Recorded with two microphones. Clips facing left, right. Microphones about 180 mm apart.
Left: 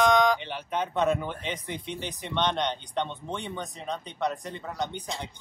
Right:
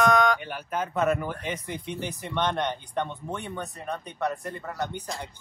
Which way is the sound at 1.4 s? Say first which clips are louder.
Right 1 dB; 10° right (ahead or behind).